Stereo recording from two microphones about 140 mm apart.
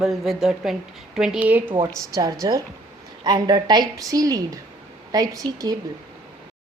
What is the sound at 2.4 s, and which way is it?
A woman's voice, 25° right (ahead or behind).